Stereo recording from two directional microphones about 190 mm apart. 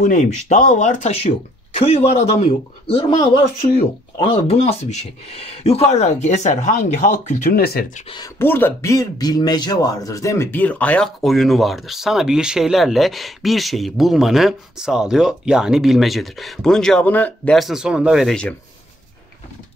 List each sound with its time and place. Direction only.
0.0 s speech: 40° left (ahead or behind)
8.4 s speech: 10° left (ahead or behind)